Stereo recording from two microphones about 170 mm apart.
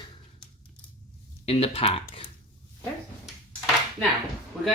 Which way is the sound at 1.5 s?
35° left (ahead or behind).